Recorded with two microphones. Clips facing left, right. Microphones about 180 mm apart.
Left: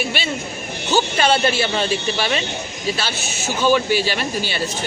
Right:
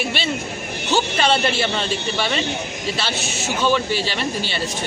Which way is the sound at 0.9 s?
5° left (ahead or behind).